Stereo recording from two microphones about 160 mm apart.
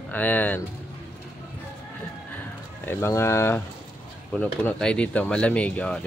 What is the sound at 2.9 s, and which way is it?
Speech, 15° left (ahead or behind).